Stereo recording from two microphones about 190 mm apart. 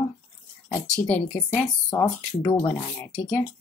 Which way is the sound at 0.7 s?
10° left (ahead or behind).